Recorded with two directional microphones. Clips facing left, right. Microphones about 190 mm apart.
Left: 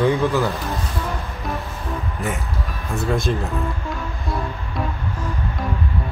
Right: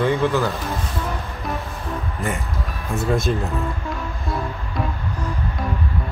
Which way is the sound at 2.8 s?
Centre (ahead or behind).